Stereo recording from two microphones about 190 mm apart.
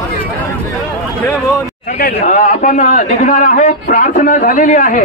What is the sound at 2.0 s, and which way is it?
A man's voice, 45° left (ahead or behind).